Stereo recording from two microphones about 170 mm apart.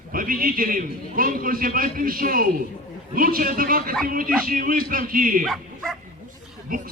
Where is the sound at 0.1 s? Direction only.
55° right (ahead or behind).